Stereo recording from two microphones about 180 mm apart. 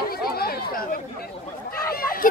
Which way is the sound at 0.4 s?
60° left (ahead or behind).